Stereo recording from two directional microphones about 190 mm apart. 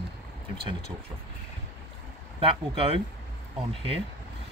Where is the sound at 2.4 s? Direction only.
30° right (ahead or behind).